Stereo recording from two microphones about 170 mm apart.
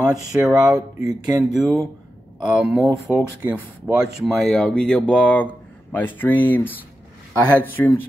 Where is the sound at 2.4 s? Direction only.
5° right (ahead or behind).